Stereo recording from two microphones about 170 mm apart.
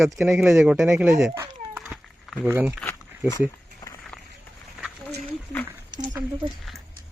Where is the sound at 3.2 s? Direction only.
20° left (ahead or behind).